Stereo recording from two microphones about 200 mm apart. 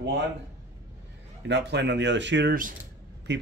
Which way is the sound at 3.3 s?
60° right (ahead or behind).